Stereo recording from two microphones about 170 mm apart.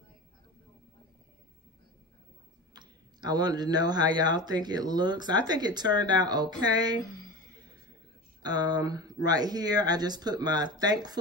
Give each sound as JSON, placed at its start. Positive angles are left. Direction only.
{"t": 2.7, "sound": "speech", "side_deg": -25}
{"t": 8.4, "sound": "speech", "side_deg": -25}